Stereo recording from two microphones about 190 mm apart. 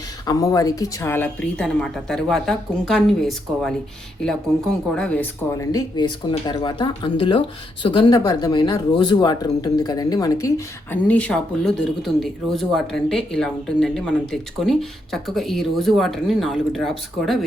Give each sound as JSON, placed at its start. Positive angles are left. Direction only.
{"t": 0.3, "sound": "speech", "side_deg": 20}
{"t": 4.9, "sound": "speech", "side_deg": 5}
{"t": 10.9, "sound": "speech", "side_deg": 5}